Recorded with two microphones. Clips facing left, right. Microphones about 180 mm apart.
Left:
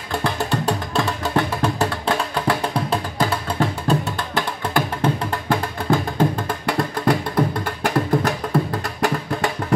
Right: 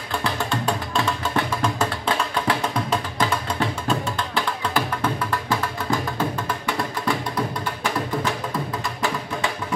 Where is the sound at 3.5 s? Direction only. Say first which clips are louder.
Left 4 dB; 40° left (ahead or behind).